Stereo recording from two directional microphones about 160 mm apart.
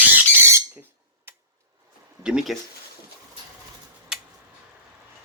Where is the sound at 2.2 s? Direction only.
5° right (ahead or behind).